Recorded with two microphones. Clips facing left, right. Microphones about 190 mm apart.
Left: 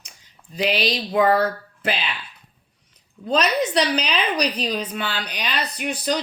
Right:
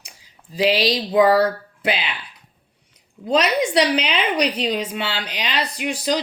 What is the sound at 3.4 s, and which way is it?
A woman's voice, 20° right (ahead or behind).